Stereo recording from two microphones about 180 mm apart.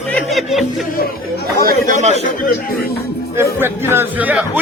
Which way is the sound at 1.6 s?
45° right (ahead or behind).